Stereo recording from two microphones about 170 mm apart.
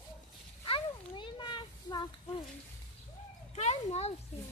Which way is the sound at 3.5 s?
40° left (ahead or behind).